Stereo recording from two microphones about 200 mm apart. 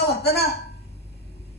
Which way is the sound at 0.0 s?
55° left (ahead or behind).